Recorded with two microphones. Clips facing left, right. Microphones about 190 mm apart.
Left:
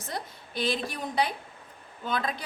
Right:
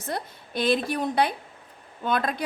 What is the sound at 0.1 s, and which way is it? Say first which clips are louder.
A woman's voice: right 5 dB; 60° right (ahead or behind).